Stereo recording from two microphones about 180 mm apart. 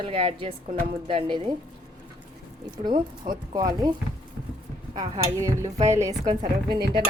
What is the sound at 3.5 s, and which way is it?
Speech, 20° right (ahead or behind).